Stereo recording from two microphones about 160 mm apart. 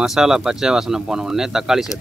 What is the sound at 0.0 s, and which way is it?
Speech, 5° right (ahead or behind).